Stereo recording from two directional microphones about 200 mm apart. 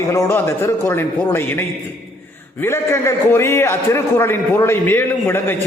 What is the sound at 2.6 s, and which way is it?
A man's voice, 15° left (ahead or behind).